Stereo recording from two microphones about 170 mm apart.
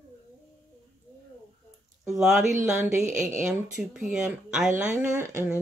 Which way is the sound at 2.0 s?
5° right (ahead or behind).